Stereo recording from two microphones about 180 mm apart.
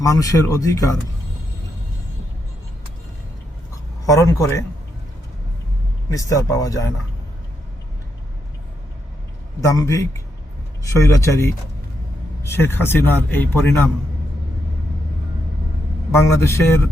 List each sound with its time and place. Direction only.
0.0 s speech: 20° left (ahead or behind)
4.0 s a man's voice: 20° left (ahead or behind)
6.1 s speech: 20° left (ahead or behind)
9.6 s a man's voice: 20° left (ahead or behind)
16.1 s a man's voice: 15° left (ahead or behind)